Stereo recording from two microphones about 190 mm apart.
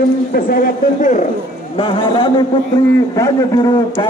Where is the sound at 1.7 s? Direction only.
25° left (ahead or behind).